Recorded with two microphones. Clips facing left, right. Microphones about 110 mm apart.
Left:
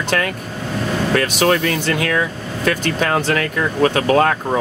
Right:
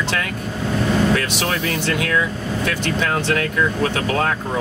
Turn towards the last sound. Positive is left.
turn(degrees=55)  # may be behind; listen again after turning